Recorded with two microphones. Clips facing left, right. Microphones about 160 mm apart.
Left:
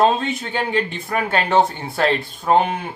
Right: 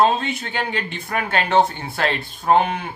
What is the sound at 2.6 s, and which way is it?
Speech, 30° left (ahead or behind).